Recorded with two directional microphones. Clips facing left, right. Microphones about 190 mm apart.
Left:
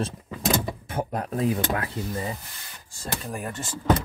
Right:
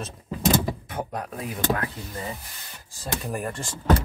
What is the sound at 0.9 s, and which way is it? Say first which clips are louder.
Speech: left 3 dB; 25° left (ahead or behind).